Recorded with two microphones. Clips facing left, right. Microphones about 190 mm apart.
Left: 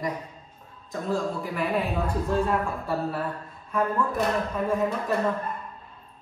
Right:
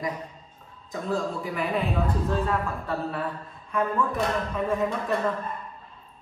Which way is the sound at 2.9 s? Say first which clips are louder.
Left 1 dB; 5° left (ahead or behind).